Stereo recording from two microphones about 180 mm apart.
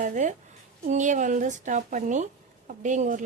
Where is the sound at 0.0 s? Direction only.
45° right (ahead or behind).